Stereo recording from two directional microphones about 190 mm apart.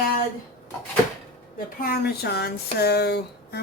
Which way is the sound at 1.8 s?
55° left (ahead or behind).